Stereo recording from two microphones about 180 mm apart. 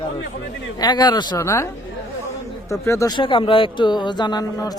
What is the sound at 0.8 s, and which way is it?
Speech, 25° left (ahead or behind).